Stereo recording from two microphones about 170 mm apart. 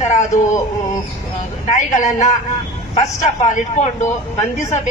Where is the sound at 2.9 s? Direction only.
40° left (ahead or behind).